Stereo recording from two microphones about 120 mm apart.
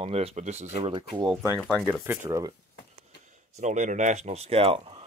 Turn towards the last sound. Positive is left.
turn(degrees=-50)  # may be behind; listen again after turning